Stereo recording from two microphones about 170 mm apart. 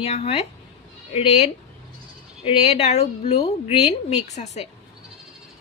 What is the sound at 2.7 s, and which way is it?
Speech, 40° left (ahead or behind).